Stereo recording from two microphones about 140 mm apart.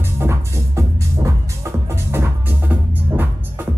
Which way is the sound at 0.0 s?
20° right (ahead or behind).